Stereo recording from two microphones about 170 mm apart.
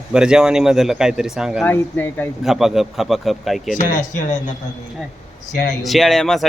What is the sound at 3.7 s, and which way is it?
Speech, 50° left (ahead or behind).